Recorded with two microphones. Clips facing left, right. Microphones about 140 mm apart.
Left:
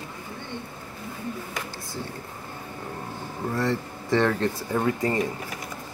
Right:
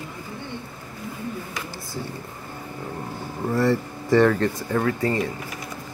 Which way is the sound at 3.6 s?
5° right (ahead or behind).